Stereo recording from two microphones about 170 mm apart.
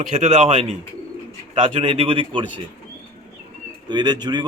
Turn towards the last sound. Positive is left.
turn(degrees=-25)  # may be behind; listen again after turning